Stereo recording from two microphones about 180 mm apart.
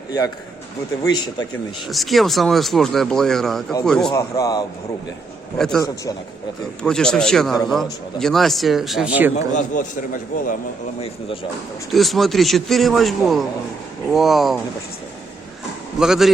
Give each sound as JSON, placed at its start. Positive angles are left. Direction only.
{"t": 1.0, "sound": "a man's voice", "side_deg": 20}
{"t": 1.9, "sound": "speech", "side_deg": 0}
{"t": 4.1, "sound": "a man's voice", "side_deg": 20}
{"t": 5.5, "sound": "speech", "side_deg": 5}
{"t": 6.8, "sound": "speech", "side_deg": 5}
{"t": 9.6, "sound": "a man's voice", "side_deg": 45}
{"t": 11.9, "sound": "speech", "side_deg": 0}
{"t": 16.0, "sound": "speech", "side_deg": 0}